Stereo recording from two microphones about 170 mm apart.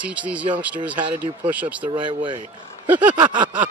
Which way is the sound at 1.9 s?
30° right (ahead or behind).